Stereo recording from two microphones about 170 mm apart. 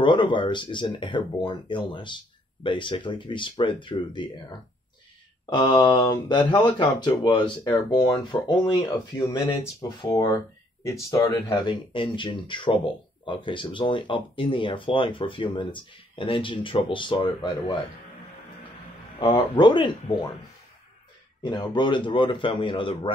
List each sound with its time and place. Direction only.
0.0 s speech: 30° left (ahead or behind)
19.1 s speech: 25° left (ahead or behind)
21.4 s speech: 25° left (ahead or behind)